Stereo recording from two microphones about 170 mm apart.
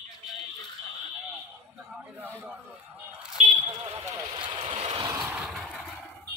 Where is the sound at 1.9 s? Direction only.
10° right (ahead or behind).